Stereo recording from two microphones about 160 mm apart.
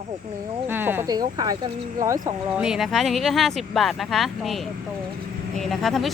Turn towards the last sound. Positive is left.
turn(degrees=0)  # may be behind; listen again after turning